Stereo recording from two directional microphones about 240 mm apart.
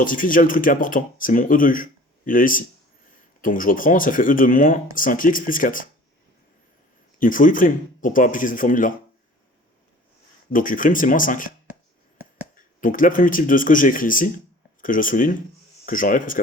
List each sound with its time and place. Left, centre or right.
0.0 s speech: left
7.2 s speech: left
10.5 s speech: left
12.5 s speech: left